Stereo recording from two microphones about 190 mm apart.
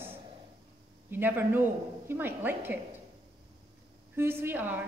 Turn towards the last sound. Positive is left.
turn(degrees=-10)  # may be behind; listen again after turning